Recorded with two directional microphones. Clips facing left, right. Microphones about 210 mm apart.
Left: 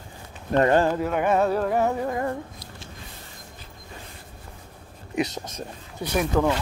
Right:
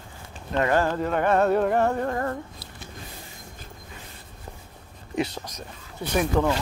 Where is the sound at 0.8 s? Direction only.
10° left (ahead or behind).